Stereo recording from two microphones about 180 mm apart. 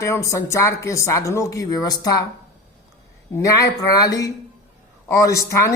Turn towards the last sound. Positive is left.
turn(degrees=15)  # may be behind; listen again after turning